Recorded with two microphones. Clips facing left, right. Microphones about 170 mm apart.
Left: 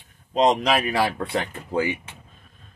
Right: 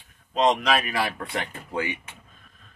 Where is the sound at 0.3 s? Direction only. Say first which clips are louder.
Left 2 dB; 30° left (ahead or behind).